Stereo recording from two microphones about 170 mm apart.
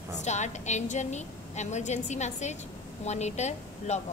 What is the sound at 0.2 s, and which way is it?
A woman's voice, 45° left (ahead or behind).